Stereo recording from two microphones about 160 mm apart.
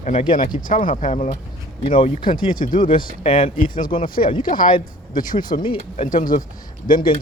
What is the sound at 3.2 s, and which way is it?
Speech, 35° left (ahead or behind).